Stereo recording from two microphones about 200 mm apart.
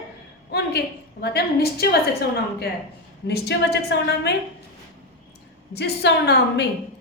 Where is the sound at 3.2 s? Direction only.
55° left (ahead or behind).